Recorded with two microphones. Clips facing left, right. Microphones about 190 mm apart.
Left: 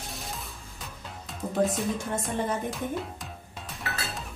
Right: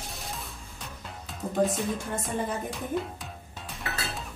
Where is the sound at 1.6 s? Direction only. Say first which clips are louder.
Even; centre (ahead or behind).